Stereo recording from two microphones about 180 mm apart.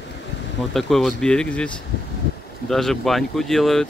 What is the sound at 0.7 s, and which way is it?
Speech, centre (ahead or behind).